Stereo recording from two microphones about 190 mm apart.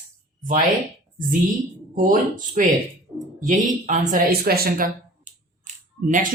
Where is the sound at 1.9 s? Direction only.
45° right (ahead or behind).